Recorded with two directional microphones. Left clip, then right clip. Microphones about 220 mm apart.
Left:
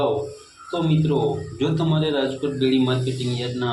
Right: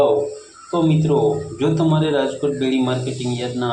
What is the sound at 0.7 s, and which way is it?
Speech, 5° right (ahead or behind).